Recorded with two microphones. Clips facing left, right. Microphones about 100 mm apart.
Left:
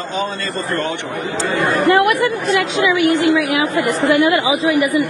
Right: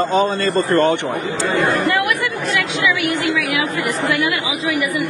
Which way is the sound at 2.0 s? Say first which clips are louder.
Left 5 dB; 35° left (ahead or behind).